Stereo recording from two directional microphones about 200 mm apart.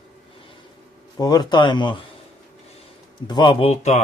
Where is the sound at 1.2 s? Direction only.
20° left (ahead or behind).